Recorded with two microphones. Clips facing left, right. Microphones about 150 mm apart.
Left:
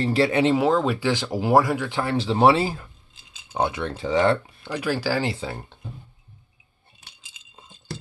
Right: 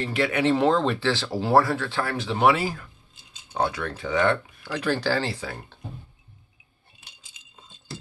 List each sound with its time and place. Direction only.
0.0 s speech: 35° left (ahead or behind)
0.5 s speech: 5° left (ahead or behind)
2.1 s speech: 30° left (ahead or behind)
4.6 s speech: 10° left (ahead or behind)
5.2 s speech: 20° left (ahead or behind)